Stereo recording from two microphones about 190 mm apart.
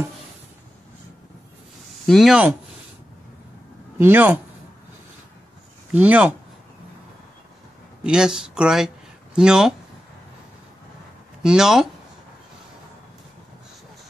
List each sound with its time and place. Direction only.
2.0 s speech: centre (ahead or behind)
4.0 s speech: 10° right (ahead or behind)
5.9 s speech: 10° right (ahead or behind)
8.0 s speech: 5° right (ahead or behind)
11.4 s speech: 5° right (ahead or behind)